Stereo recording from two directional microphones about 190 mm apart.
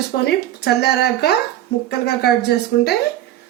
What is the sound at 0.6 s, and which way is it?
A woman's voice, 60° left (ahead or behind).